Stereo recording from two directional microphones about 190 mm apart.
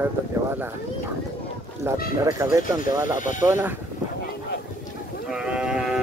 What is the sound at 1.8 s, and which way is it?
Speech, 15° right (ahead or behind).